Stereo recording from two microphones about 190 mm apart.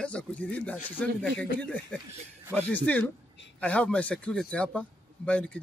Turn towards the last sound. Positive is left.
turn(degrees=5)  # may be behind; listen again after turning